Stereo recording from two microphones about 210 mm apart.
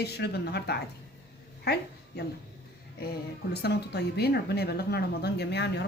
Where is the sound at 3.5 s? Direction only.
50° left (ahead or behind).